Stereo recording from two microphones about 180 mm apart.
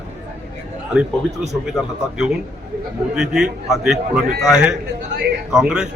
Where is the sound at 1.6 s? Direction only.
Centre (ahead or behind).